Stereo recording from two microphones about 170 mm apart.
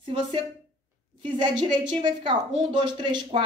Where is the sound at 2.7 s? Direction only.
25° right (ahead or behind).